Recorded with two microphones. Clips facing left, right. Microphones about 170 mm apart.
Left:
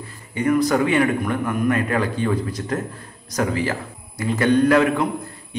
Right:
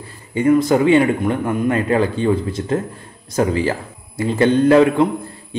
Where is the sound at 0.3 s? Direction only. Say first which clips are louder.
Right 4 dB; 25° right (ahead or behind).